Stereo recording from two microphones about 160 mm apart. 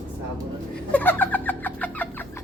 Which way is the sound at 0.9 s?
10° left (ahead or behind).